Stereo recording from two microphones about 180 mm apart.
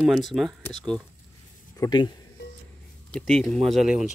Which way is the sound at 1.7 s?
20° left (ahead or behind).